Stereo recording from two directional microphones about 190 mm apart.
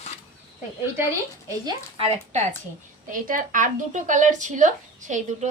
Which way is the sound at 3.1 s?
45° right (ahead or behind).